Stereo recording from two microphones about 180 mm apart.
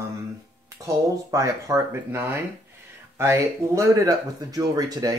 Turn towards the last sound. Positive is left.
turn(degrees=-20)  # may be behind; listen again after turning